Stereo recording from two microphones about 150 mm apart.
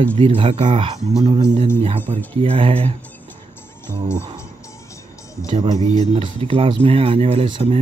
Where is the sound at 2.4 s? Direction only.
40° right (ahead or behind).